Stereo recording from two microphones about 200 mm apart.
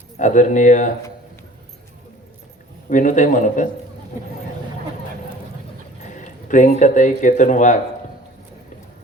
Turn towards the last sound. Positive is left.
turn(degrees=40)  # may be behind; listen again after turning